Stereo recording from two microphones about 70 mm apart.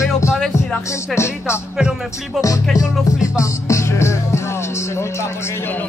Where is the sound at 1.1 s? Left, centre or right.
Left.